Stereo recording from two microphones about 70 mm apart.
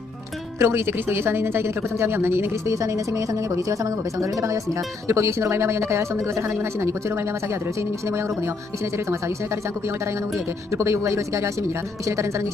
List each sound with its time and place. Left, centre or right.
0.6 s speech: right